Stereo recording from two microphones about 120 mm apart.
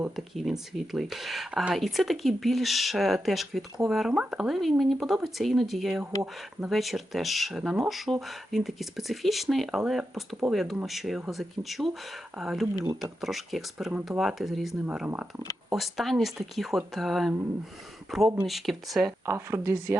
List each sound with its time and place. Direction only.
0.3 s speech: centre (ahead or behind)
19.2 s speech: 20° right (ahead or behind)